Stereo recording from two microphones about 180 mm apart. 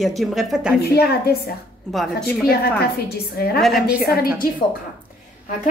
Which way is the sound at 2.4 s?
60° left (ahead or behind).